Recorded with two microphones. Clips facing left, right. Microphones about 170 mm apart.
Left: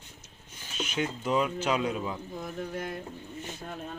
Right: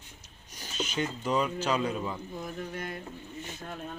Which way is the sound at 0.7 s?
5° left (ahead or behind).